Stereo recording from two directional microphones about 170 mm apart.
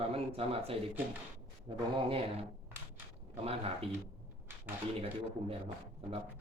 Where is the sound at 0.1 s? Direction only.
35° right (ahead or behind).